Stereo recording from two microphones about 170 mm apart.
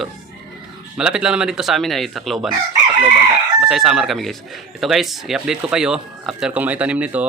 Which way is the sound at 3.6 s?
5° right (ahead or behind).